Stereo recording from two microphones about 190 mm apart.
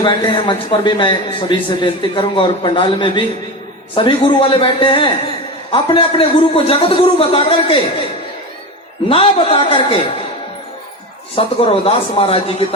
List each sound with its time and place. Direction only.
0.0 s a man's voice: 25° left (ahead or behind)
9.0 s a man's voice: 30° left (ahead or behind)
11.3 s speech: 30° left (ahead or behind)